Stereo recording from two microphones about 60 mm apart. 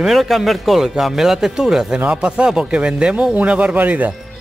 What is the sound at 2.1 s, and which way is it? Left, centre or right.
Speech, centre.